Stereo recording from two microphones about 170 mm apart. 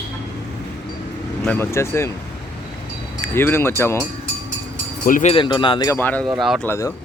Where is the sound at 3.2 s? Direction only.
15° left (ahead or behind).